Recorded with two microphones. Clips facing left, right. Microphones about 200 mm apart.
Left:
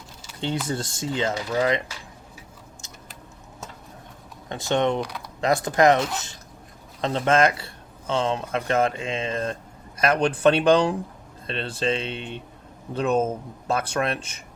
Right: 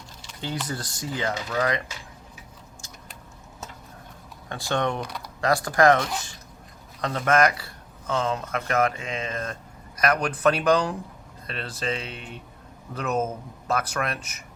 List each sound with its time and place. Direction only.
0.7 s speech: 25° left (ahead or behind)
4.4 s speech: 20° left (ahead or behind)
4.9 s speech: centre (ahead or behind)
5.4 s speech: 20° left (ahead or behind)